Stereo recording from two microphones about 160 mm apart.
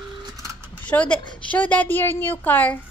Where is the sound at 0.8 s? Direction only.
10° left (ahead or behind).